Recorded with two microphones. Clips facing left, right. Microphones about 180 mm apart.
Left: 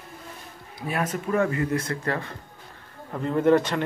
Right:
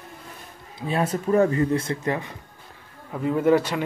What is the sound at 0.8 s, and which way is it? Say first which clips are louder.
Speech: right 3 dB; 30° right (ahead or behind).